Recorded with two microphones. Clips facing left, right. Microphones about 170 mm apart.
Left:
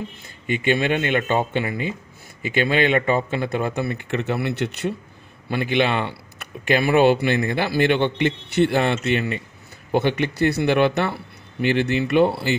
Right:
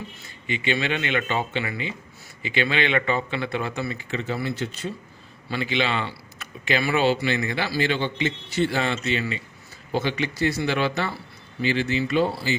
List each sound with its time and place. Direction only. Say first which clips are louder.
0.5 s speech: left 5 dB; 50° left (ahead or behind); by 4.9 s 70° left (ahead or behind)
5.5 s speech: left 5 dB; 55° left (ahead or behind)